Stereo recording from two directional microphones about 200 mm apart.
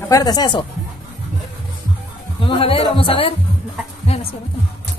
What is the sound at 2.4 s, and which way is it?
Speech, 25° left (ahead or behind).